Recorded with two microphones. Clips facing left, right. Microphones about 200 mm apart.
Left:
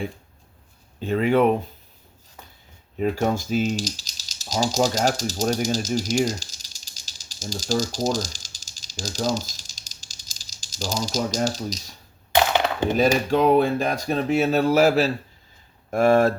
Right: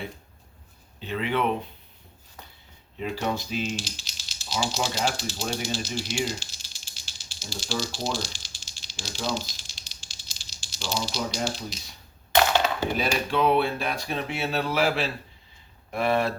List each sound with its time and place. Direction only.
1.0 s speech: 45° left (ahead or behind)
3.0 s speech: 45° left (ahead or behind)
12.3 s a sound: 15° left (ahead or behind)
13.3 s speech: 40° left (ahead or behind)